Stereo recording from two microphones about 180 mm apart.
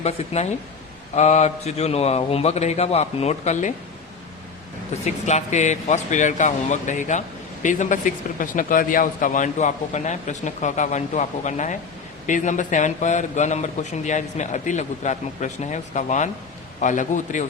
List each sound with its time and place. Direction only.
1.1 s a man's voice: 40° left (ahead or behind)
5.0 s speech: 40° left (ahead or behind)